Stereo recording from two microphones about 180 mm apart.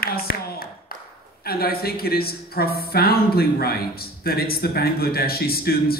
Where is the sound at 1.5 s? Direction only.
60° left (ahead or behind).